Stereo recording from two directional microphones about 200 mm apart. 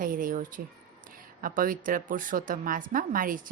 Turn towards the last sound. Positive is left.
turn(degrees=-45)  # may be behind; listen again after turning